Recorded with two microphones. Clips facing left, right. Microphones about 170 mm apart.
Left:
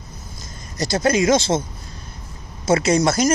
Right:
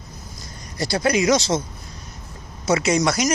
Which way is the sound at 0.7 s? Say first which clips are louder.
Left 2 dB; 45° left (ahead or behind).